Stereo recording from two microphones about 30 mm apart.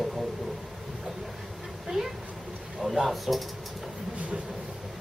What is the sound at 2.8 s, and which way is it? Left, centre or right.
Speech, centre.